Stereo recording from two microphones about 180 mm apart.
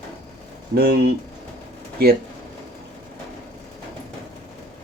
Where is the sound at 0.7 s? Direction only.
60° right (ahead or behind).